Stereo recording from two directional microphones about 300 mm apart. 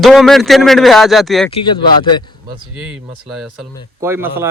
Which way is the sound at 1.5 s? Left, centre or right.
Centre.